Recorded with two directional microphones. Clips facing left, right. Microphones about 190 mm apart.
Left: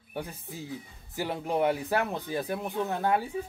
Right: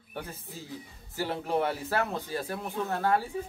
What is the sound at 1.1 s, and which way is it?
Speech, 15° left (ahead or behind).